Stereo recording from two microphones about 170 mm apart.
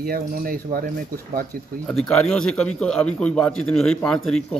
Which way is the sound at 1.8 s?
5° left (ahead or behind).